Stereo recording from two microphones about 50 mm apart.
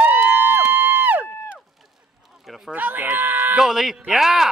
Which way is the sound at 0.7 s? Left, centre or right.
Right.